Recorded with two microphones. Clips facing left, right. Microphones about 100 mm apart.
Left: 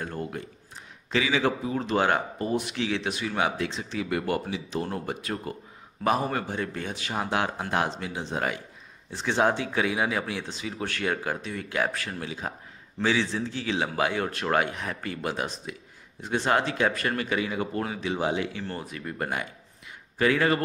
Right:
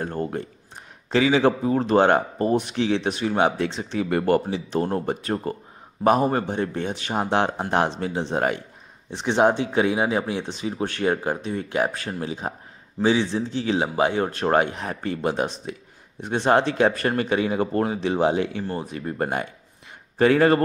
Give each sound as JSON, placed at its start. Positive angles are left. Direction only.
{"t": 0.0, "sound": "speech", "side_deg": -40}
{"t": 9.1, "sound": "speech", "side_deg": -20}